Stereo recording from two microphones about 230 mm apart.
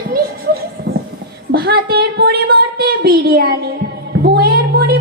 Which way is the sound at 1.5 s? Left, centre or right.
Right.